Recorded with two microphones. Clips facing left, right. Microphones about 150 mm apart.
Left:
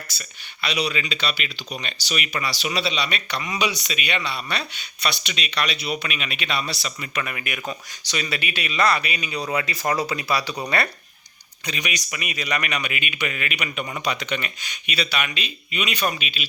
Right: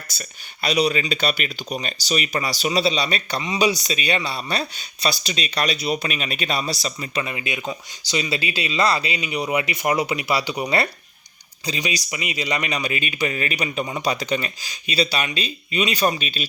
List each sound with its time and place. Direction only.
0.1 s speech: 45° right (ahead or behind)
7.2 s speech: 25° right (ahead or behind); by 16.5 s 40° right (ahead or behind)